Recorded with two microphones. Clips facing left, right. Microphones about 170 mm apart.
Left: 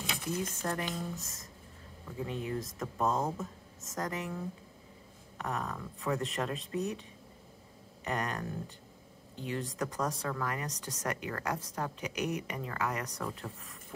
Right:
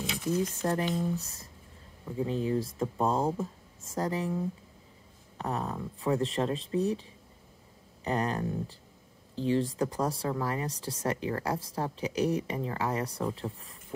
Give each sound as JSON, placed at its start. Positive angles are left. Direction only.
{"t": 0.4, "sound": "speech", "side_deg": -35}
{"t": 5.4, "sound": "speech", "side_deg": -30}